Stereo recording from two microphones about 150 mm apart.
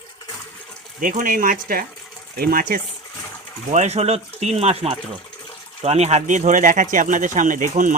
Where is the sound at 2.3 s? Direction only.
85° right.